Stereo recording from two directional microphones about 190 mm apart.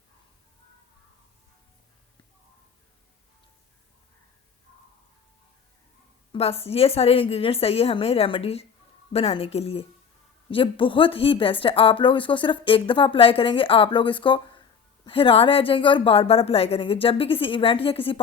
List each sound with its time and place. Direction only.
6.3 s a woman's voice: 30° left (ahead or behind)